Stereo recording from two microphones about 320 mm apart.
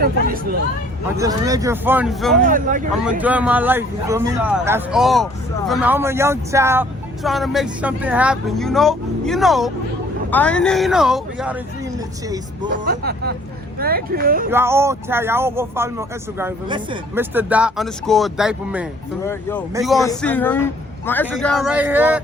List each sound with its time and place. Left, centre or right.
1.1 s speech: centre
2.4 s speech: right
2.9 s speech: centre
12.8 s speech: right
14.5 s speech: centre